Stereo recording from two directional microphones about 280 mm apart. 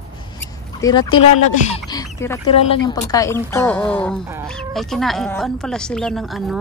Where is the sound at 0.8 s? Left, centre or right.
Centre.